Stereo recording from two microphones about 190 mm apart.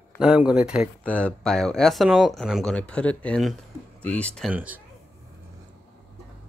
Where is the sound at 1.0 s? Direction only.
5° left (ahead or behind).